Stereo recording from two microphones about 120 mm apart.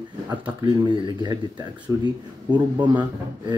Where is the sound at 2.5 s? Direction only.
40° right (ahead or behind).